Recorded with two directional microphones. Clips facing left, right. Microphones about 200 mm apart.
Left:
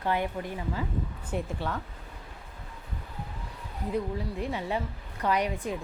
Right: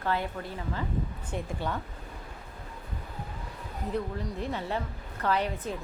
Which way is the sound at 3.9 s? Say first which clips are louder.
Left 2 dB; 10° left (ahead or behind).